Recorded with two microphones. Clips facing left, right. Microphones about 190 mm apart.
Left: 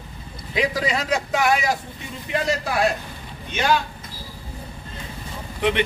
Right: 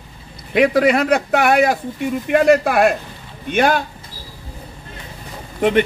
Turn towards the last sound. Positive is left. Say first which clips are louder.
# right 5 dB
turn(degrees=-45)  # may be behind; listen again after turning